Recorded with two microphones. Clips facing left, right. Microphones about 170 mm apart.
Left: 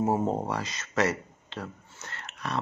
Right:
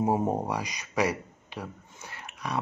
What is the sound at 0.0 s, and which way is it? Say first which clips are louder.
Speech: even; 15° right (ahead or behind).